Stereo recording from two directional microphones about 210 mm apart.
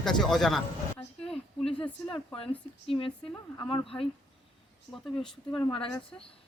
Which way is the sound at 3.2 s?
5° left (ahead or behind).